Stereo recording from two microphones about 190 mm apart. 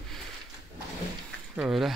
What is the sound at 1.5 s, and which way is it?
Speech, centre (ahead or behind).